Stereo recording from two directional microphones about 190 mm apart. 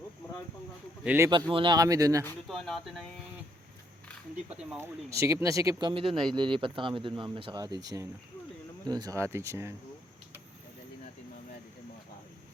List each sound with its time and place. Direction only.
1.0 s speech: 10° right (ahead or behind)
1.3 s speech: 25° right (ahead or behind)
2.5 s speech: centre (ahead or behind)
4.4 s speech: 5° right (ahead or behind)
5.9 s speech: 30° right (ahead or behind)